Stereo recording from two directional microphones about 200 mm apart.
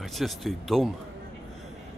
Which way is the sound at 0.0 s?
Centre (ahead or behind).